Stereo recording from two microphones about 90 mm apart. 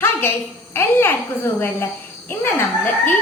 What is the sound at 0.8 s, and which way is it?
A woman's voice, 25° left (ahead or behind).